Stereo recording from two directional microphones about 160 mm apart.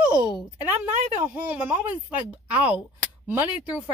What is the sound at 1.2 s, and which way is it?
Speech, 10° right (ahead or behind).